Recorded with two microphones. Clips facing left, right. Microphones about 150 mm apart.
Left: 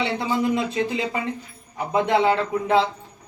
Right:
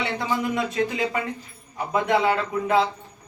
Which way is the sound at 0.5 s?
25° left (ahead or behind).